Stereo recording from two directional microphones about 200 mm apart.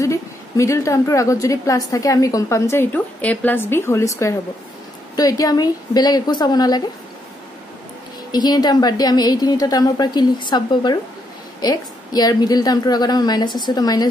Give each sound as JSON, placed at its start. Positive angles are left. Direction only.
{"t": 0.0, "sound": "a woman's voice", "side_deg": 15}
{"t": 8.3, "sound": "a woman's voice", "side_deg": 20}